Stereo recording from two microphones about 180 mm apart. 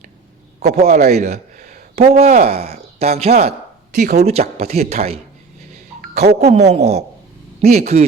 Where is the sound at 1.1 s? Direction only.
40° right (ahead or behind).